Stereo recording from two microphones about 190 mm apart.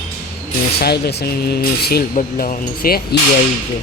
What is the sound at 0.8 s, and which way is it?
Speech, 60° left (ahead or behind).